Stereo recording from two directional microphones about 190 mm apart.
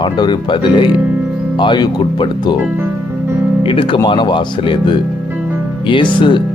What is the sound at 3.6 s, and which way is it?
Speech, 25° left (ahead or behind).